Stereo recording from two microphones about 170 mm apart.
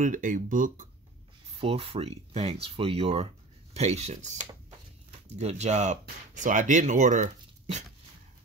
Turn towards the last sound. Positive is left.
turn(degrees=-45)  # may be behind; listen again after turning